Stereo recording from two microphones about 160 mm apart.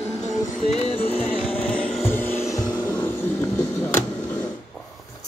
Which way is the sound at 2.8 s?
15° left (ahead or behind).